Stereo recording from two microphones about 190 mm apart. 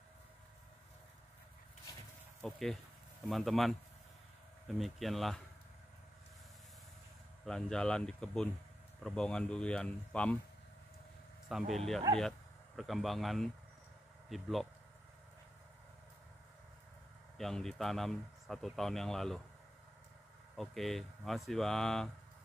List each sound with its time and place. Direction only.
2.4 s speech: centre (ahead or behind)
7.4 s speech: 5° left (ahead or behind)
11.4 s speech: centre (ahead or behind)
17.4 s speech: centre (ahead or behind)
20.5 s speech: centre (ahead or behind)